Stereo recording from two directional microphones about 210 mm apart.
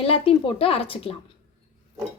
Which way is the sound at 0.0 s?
25° left (ahead or behind).